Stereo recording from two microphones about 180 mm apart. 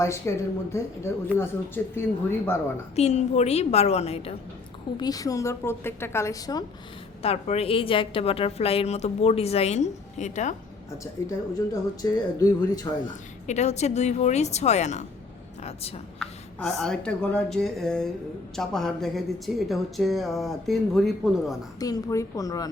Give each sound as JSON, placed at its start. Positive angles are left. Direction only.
{"t": 0.0, "sound": "speech", "side_deg": 15}
{"t": 2.9, "sound": "a woman's voice", "side_deg": 35}
{"t": 4.9, "sound": "speech", "side_deg": 20}
{"t": 7.2, "sound": "a woman's voice", "side_deg": 35}
{"t": 11.0, "sound": "speech", "side_deg": 20}
{"t": 13.1, "sound": "a woman's voice", "side_deg": 40}
{"t": 16.1, "sound": "a woman's voice", "side_deg": 0}
{"t": 21.8, "sound": "speech", "side_deg": 20}